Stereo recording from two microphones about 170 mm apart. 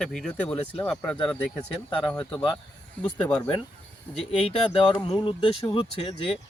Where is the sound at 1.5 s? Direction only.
30° left (ahead or behind).